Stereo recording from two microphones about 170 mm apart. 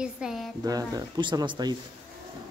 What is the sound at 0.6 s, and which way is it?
Speech, 20° right (ahead or behind).